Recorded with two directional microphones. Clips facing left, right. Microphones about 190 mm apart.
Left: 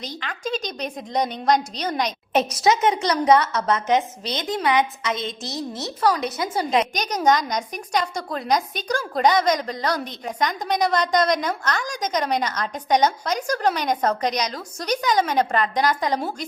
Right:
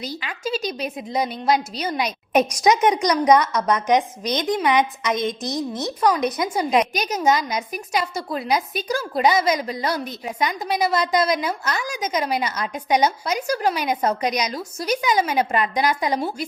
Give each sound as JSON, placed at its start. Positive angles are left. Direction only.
{"t": 0.0, "sound": "a woman's voice", "side_deg": -10}